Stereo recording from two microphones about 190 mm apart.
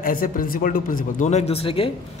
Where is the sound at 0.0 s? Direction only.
45° left (ahead or behind); by 1.9 s 30° left (ahead or behind).